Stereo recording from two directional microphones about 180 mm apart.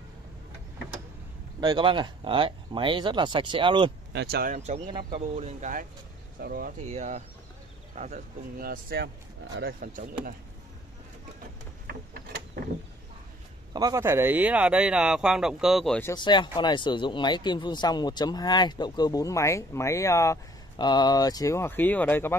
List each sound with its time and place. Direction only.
1.6 s speech: 25° right (ahead or behind)
4.1 s speech: 65° right (ahead or behind)
4.6 s speech: 35° right (ahead or behind); by 9.1 s 60° right (ahead or behind)
9.8 s speech: 50° right (ahead or behind)
11.9 s a sound: 60° right (ahead or behind)
13.7 s speech: 20° right (ahead or behind); by 16.0 s centre (ahead or behind)
16.2 s speech: 25° left (ahead or behind)